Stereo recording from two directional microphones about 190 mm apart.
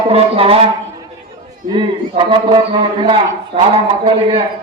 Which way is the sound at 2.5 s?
25° right (ahead or behind).